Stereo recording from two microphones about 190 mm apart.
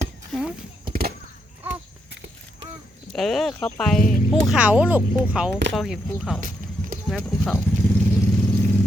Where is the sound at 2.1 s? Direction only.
65° right (ahead or behind).